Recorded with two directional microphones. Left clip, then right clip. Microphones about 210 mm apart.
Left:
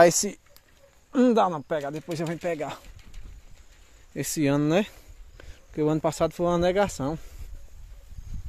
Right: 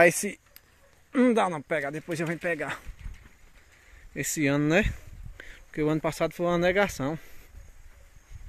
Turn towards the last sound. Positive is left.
turn(degrees=10)  # may be behind; listen again after turning